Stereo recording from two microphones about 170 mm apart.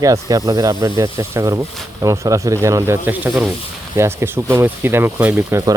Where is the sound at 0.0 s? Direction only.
20° right (ahead or behind).